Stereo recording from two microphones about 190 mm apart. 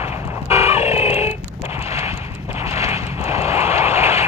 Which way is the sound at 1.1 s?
30° left (ahead or behind).